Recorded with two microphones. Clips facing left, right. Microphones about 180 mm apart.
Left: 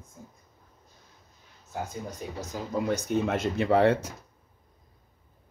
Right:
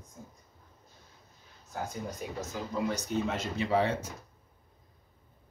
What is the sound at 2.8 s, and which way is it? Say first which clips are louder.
Speech: left 5 dB; 55° left (ahead or behind).